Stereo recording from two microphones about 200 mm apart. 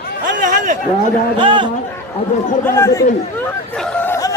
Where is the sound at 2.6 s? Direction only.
15° left (ahead or behind).